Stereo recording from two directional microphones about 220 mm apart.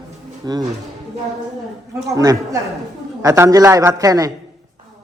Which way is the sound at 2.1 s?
15° right (ahead or behind).